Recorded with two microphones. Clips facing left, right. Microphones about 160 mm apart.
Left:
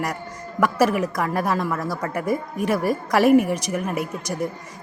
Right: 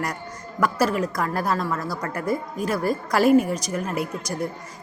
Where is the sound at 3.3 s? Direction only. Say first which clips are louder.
Left 1 dB; 65° left (ahead or behind).